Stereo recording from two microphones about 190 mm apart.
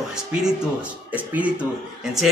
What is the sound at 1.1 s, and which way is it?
Speech, 10° right (ahead or behind).